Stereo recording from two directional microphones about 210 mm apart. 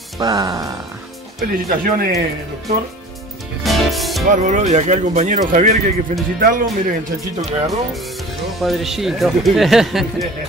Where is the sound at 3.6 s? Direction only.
Centre (ahead or behind).